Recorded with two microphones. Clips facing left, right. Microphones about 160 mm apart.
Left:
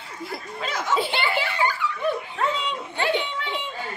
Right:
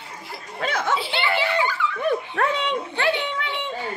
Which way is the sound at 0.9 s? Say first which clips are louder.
Left 1 dB; 45° left (ahead or behind).